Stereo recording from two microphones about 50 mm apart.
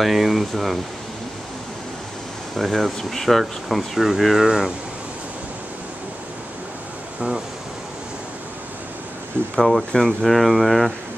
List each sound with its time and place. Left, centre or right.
0.0 s speech: centre
2.5 s speech: centre
4.5 s speech: centre
7.2 s waves: centre
9.6 s speech: centre